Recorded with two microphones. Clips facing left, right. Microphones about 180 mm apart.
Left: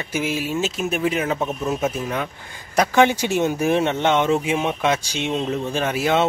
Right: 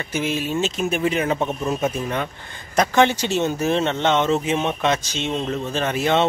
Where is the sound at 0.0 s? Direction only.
10° left (ahead or behind).